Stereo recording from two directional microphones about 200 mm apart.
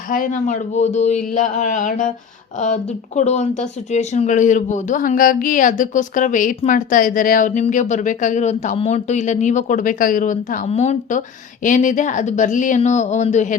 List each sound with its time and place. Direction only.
0.1 s speech: 40° left (ahead or behind)
3.2 s speech: 35° left (ahead or behind)